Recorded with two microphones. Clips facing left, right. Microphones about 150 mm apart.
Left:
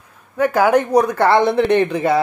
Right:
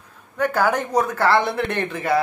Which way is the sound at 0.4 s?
10° left (ahead or behind).